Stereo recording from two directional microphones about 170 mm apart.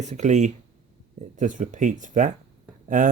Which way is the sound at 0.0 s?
45° right (ahead or behind).